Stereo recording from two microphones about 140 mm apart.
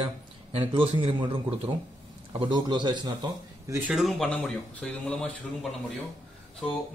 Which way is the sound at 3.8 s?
5° right (ahead or behind).